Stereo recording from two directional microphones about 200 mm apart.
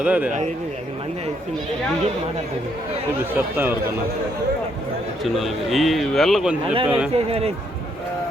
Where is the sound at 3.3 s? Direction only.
10° right (ahead or behind).